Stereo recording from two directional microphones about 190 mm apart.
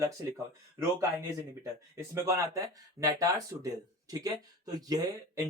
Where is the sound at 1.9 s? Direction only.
15° right (ahead or behind).